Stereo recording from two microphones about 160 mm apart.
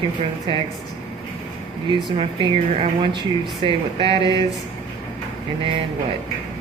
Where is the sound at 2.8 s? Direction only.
30° right (ahead or behind).